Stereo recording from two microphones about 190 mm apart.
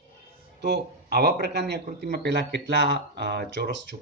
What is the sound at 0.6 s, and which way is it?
Speech, 60° right (ahead or behind).